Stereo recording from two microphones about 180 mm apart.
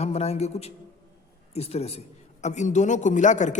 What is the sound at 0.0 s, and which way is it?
A man's voice, 35° left (ahead or behind).